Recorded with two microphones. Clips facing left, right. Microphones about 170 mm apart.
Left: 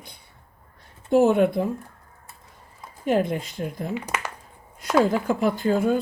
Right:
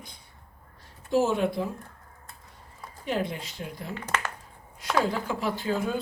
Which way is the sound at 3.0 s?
50° left (ahead or behind).